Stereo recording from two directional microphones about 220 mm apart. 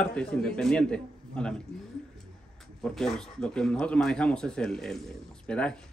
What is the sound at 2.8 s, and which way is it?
Speech, centre (ahead or behind).